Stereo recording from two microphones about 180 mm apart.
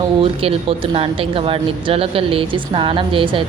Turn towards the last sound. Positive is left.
turn(degrees=-30)  # may be behind; listen again after turning